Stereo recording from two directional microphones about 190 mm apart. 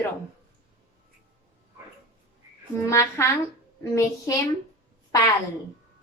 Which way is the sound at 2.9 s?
15° left (ahead or behind).